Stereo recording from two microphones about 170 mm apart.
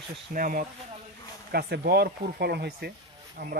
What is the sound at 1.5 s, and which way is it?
Speech, 70° right (ahead or behind).